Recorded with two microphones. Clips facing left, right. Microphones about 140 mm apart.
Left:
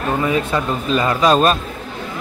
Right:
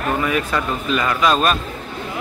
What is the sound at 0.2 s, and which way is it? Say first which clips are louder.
Speech: left 2 dB; 25° left (ahead or behind).